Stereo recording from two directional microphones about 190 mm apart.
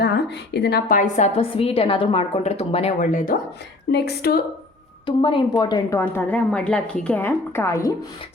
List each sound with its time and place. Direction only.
0.0 s a woman's voice: 60° left (ahead or behind); by 3.3 s 45° left (ahead or behind)
3.9 s speech: 60° left (ahead or behind)
5.0 s a woman's voice: 25° left (ahead or behind)